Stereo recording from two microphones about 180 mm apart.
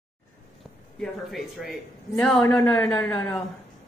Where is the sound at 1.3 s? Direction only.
Centre (ahead or behind).